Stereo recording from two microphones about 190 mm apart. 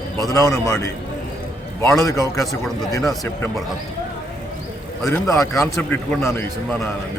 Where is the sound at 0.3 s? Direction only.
20° left (ahead or behind).